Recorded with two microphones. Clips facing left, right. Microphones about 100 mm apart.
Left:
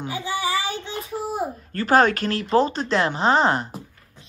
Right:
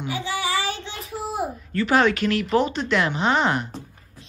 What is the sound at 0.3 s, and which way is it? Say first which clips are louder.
Child singing: left 1 dB; 25° left (ahead or behind).